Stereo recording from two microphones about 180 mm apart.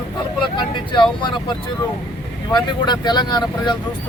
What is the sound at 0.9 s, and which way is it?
Speech, 25° left (ahead or behind).